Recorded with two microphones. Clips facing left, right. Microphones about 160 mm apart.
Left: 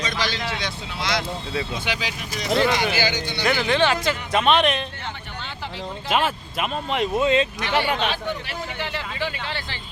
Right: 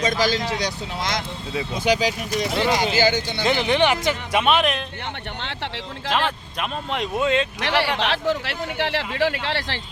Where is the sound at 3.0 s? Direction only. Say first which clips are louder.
Right 5 dB; 50° right (ahead or behind).